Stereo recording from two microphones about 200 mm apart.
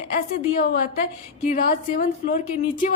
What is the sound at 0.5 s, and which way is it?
A woman's voice, 50° left (ahead or behind).